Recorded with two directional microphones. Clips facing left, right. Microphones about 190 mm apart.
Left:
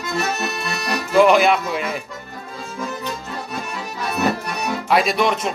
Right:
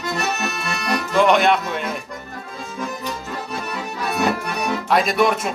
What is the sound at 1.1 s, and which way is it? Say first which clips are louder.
Music: left 2 dB; 5° left (ahead or behind).